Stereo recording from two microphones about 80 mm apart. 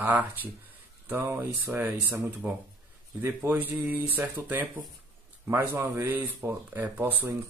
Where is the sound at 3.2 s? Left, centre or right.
Right.